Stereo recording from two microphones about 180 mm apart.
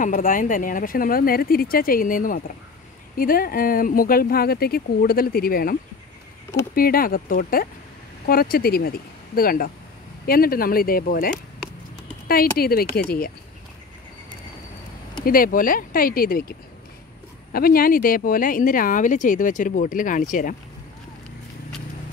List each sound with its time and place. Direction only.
0.0 s speech: 50° left (ahead or behind)
12.3 s speech: 55° left (ahead or behind)
15.2 s speech: 50° left (ahead or behind)